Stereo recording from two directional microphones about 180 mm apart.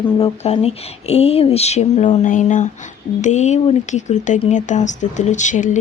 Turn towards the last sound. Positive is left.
turn(degrees=40)  # may be behind; listen again after turning